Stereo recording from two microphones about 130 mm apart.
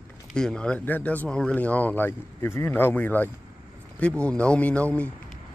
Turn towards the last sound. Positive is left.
turn(degrees=10)  # may be behind; listen again after turning